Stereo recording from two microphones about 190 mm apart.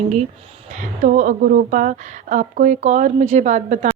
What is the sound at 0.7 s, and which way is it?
Speech, 40° right (ahead or behind).